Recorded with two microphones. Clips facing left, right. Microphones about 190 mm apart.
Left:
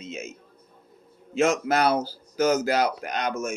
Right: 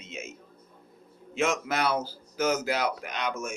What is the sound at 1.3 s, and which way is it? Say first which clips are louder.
A man's voice: left 6 dB; 40° left (ahead or behind).